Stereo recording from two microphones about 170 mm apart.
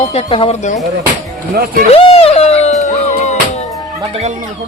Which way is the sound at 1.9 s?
35° left (ahead or behind).